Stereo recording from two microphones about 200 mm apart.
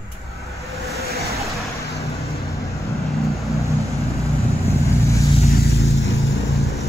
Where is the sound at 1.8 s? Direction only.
15° left (ahead or behind).